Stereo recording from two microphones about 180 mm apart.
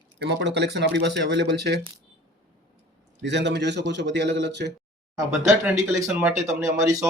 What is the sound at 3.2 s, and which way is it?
Speech, 75° right (ahead or behind).